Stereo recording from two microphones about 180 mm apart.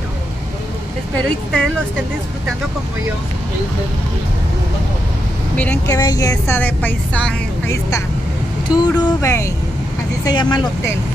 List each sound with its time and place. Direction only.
1.1 s speech: 5° left (ahead or behind)
5.9 s a woman's voice: 20° left (ahead or behind)
8.7 s a woman's voice: 15° left (ahead or behind)